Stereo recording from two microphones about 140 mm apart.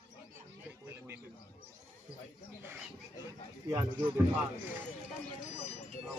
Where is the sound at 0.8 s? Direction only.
15° right (ahead or behind).